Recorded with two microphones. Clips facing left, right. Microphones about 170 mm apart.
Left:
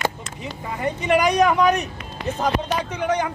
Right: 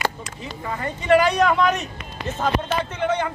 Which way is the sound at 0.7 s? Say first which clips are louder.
Right 2 dB; 15° left (ahead or behind).